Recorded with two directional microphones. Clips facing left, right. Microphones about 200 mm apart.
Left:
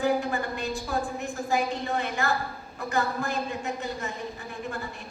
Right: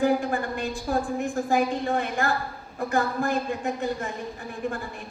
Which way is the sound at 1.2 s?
50° right (ahead or behind).